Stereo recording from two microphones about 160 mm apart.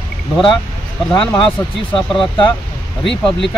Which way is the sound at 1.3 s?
30° left (ahead or behind).